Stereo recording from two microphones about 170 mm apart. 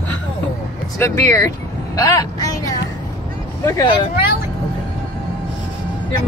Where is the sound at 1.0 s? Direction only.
15° left (ahead or behind).